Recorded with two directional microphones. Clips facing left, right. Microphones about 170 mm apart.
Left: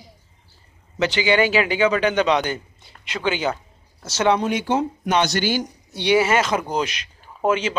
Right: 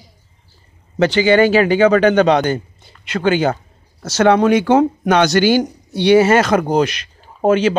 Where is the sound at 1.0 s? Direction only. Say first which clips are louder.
Right 7 dB; 50° right (ahead or behind).